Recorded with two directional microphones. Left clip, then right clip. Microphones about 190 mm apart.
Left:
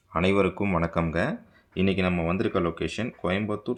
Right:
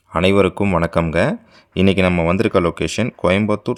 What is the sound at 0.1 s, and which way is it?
Speech, 45° right (ahead or behind).